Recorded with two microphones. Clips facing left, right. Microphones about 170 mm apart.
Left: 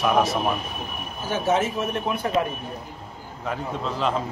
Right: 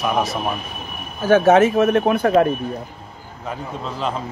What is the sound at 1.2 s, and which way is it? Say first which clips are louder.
Speech: right 10 dB; 85° right.